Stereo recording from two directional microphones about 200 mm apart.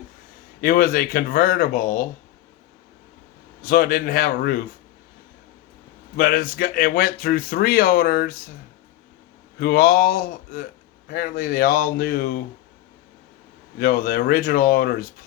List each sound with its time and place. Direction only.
0.6 s speech: 45° left (ahead or behind)
3.6 s speech: 45° left (ahead or behind)
6.1 s speech: 45° left (ahead or behind)
9.6 s speech: 50° left (ahead or behind)
13.7 s speech: 45° left (ahead or behind)